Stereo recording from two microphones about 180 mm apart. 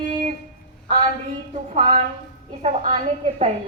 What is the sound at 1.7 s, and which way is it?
A woman's voice, 35° right (ahead or behind).